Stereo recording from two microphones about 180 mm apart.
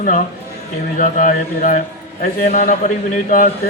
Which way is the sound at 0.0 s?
50° left (ahead or behind).